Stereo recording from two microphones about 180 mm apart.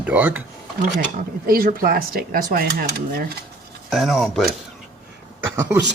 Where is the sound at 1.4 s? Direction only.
55° right (ahead or behind).